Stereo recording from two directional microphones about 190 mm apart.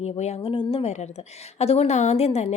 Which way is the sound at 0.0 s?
35° left (ahead or behind).